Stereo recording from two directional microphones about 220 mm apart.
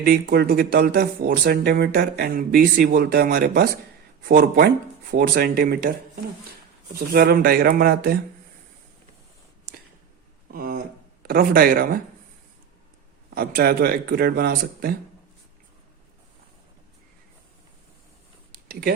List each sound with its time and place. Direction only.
0.0 s speech: 45° right (ahead or behind)
7.1 s speech: 45° right (ahead or behind)
10.5 s speech: 40° right (ahead or behind)
13.3 s speech: 45° right (ahead or behind)
18.7 s speech: 45° right (ahead or behind)